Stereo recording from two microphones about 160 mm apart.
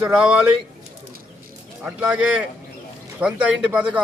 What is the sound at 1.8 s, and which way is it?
A man's voice, 10° right (ahead or behind).